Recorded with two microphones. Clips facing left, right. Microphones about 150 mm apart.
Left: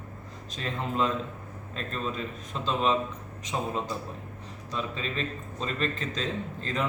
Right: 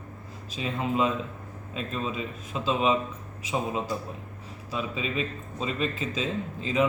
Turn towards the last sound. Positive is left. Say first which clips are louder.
# right 5 dB
turn(degrees=-5)  # may be behind; listen again after turning